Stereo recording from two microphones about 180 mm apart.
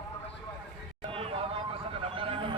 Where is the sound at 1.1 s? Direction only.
30° right (ahead or behind).